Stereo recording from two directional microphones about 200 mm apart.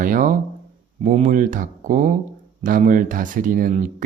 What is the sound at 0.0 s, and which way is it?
Speech, 40° right (ahead or behind).